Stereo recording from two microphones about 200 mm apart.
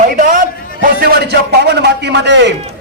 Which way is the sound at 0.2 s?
40° right (ahead or behind).